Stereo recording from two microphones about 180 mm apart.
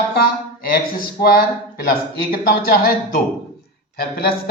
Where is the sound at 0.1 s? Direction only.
60° left (ahead or behind).